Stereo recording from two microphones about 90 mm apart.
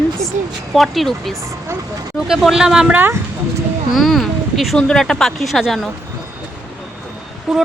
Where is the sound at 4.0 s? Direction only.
Centre (ahead or behind).